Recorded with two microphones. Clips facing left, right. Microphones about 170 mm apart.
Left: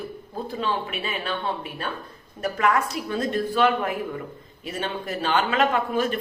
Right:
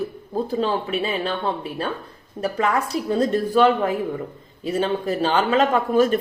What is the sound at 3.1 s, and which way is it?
A woman's voice, 35° right (ahead or behind).